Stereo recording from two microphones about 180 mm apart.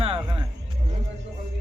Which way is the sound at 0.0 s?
30° right (ahead or behind).